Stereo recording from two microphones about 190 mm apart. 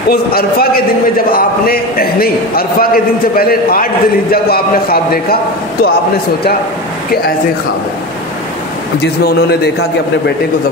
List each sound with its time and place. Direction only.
0.1 s a man's voice: 50° left (ahead or behind)
9.0 s a man's voice: 55° left (ahead or behind)